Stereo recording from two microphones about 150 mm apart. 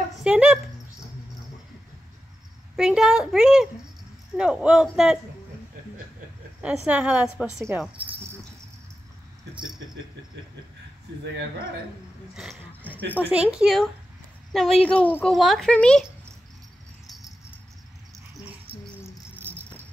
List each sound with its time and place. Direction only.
0.1 s dog: 5° right (ahead or behind)
2.7 s a woman's voice: 5° right (ahead or behind)
6.6 s speech: 5° right (ahead or behind)
12.4 s a sound: 10° right (ahead or behind)
13.3 s a woman's voice: 5° right (ahead or behind)
18.7 s cricket: 35° right (ahead or behind)
19.4 s rattle: 15° right (ahead or behind)